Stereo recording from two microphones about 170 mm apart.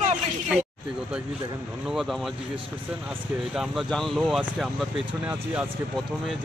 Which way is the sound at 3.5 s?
Centre (ahead or behind).